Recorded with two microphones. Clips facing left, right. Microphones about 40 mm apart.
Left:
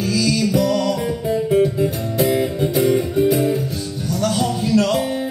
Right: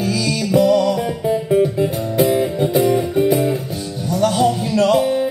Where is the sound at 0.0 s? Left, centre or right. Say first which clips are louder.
Left 1 dB; centre.